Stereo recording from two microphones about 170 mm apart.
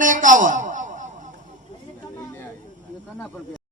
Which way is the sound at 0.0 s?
50° right (ahead or behind).